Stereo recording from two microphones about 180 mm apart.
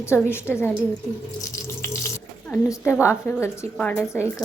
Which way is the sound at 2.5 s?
15° left (ahead or behind).